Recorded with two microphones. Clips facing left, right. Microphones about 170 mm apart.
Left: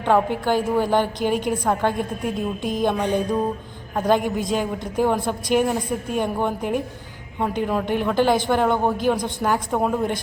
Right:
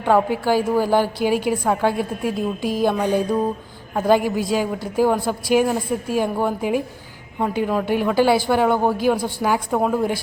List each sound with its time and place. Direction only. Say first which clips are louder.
0.0 s a woman's voice: right 2 dB; 5° right (ahead or behind)